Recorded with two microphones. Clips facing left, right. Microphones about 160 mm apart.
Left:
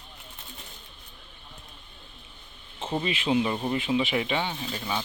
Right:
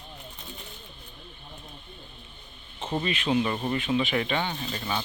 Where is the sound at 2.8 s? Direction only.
5° left (ahead or behind).